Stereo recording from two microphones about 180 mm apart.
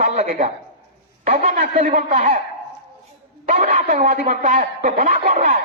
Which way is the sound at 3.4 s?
45° right (ahead or behind).